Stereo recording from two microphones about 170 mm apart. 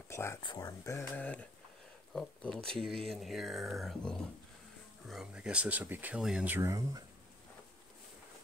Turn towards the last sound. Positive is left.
turn(degrees=-20)  # may be behind; listen again after turning